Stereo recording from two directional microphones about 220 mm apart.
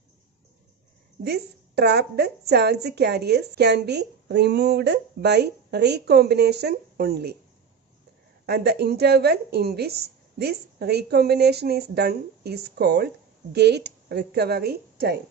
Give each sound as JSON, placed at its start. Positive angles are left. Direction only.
{"t": 1.2, "sound": "speech", "side_deg": -45}
{"t": 8.5, "sound": "speech", "side_deg": -45}